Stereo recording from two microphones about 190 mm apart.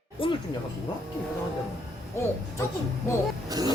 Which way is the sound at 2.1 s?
15° left (ahead or behind).